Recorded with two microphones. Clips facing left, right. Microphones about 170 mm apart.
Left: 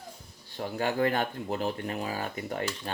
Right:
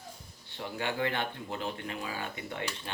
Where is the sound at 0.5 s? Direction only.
40° left (ahead or behind).